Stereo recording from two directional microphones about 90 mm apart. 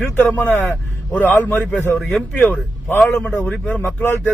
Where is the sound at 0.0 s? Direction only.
20° left (ahead or behind).